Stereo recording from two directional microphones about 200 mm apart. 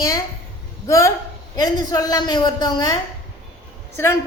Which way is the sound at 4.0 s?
15° left (ahead or behind).